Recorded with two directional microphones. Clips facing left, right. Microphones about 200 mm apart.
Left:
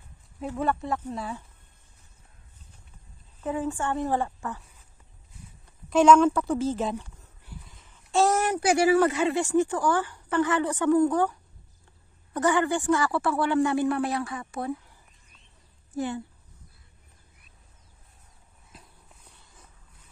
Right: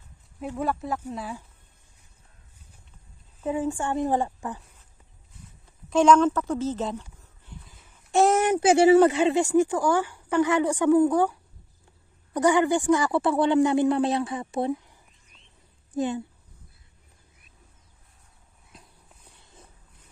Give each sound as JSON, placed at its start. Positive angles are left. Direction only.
{"t": 0.7, "sound": "speech", "side_deg": 0}
{"t": 3.3, "sound": "speech", "side_deg": -10}
{"t": 5.9, "sound": "a woman's voice", "side_deg": 5}
{"t": 6.5, "sound": "a sound", "side_deg": 10}
{"t": 8.1, "sound": "speech", "side_deg": -20}
{"t": 12.4, "sound": "a woman's voice", "side_deg": -15}
{"t": 15.9, "sound": "speech", "side_deg": -15}
{"t": 18.7, "sound": "walk", "side_deg": 5}